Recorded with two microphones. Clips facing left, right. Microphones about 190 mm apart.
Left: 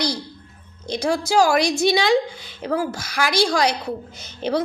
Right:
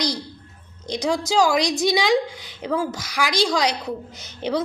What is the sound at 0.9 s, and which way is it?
A woman's voice, 15° right (ahead or behind).